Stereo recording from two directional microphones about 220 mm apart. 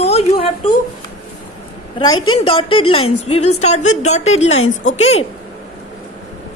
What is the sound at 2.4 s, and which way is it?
A woman's voice, 25° left (ahead or behind).